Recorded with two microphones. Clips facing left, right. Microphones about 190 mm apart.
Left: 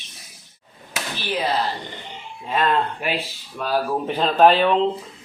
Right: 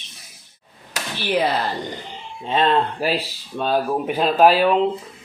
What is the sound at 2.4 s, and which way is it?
Speech, 25° right (ahead or behind).